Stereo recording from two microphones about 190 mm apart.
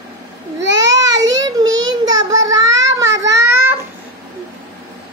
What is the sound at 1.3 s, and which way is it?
Child singing, 20° right (ahead or behind).